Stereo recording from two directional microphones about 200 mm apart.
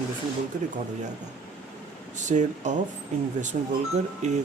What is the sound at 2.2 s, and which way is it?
Speech, 35° right (ahead or behind).